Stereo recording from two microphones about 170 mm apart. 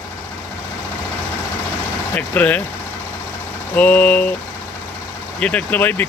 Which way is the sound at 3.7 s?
10° left (ahead or behind).